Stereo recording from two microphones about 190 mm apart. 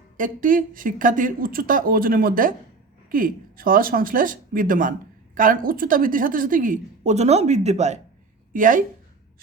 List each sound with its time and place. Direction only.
0.2 s speech: 45° right (ahead or behind)